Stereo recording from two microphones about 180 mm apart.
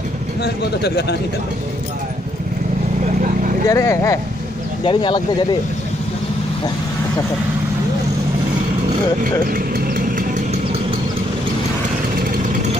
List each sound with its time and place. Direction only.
0.4 s speech: 65° left (ahead or behind)
3.6 s speech: 15° left (ahead or behind)
4.8 s speech: 25° left (ahead or behind)
9.2 s vehicle: 50° right (ahead or behind)